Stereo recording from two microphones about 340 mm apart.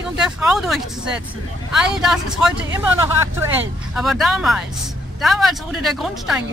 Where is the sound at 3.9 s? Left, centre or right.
Centre.